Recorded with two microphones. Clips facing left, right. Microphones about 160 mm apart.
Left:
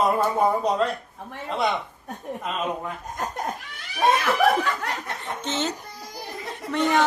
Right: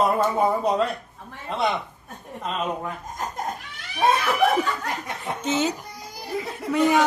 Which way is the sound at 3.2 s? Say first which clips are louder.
Left 1 dB; 75° left (ahead or behind).